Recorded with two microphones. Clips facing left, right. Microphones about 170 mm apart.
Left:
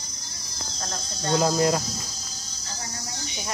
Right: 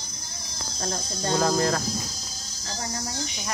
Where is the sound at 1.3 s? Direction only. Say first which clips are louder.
Left 2 dB; 20° left (ahead or behind).